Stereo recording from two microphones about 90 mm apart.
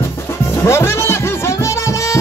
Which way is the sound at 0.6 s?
30° left (ahead or behind).